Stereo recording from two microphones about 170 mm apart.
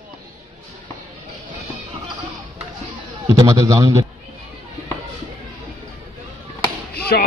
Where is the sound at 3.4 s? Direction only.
20° right (ahead or behind).